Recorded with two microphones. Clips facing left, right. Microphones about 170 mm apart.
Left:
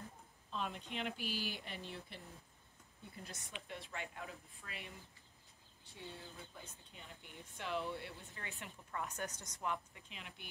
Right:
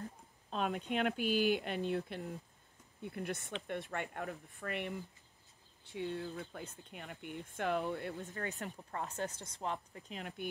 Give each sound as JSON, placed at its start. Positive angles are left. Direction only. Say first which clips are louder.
{"t": 0.5, "sound": "a sound", "louder": "right 7 dB", "side_deg": -65}
{"t": 1.1, "sound": "speech", "louder": "right 12 dB", "side_deg": -20}
{"t": 1.6, "sound": "speech", "louder": "right 12 dB", "side_deg": -60}
{"t": 5.9, "sound": "speech", "louder": "right 12 dB", "side_deg": -60}